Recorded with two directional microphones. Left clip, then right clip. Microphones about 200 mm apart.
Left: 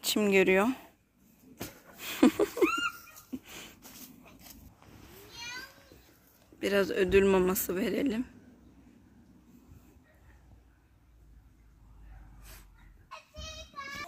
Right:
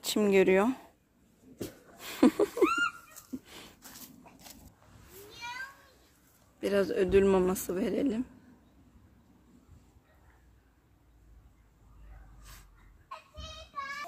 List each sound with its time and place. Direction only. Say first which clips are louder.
0.0 s speech: even; centre (ahead or behind)
2.0 s cat: even; centre (ahead or behind)
3.3 s a sound: left 2 dB; centre (ahead or behind)
3.8 s dog: even; 30° left (ahead or behind)
6.6 s speech: even; 5° left (ahead or behind)